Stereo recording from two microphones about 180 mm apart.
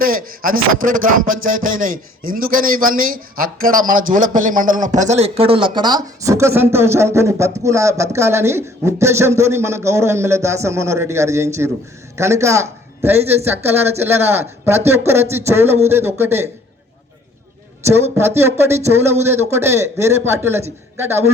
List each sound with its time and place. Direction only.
0.0 s a man's voice: 55° right (ahead or behind); by 16.5 s 15° right (ahead or behind)
18.1 s a man's voice: 15° right (ahead or behind)